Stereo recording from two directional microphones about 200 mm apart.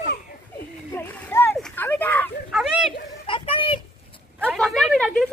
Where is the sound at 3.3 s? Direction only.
25° left (ahead or behind).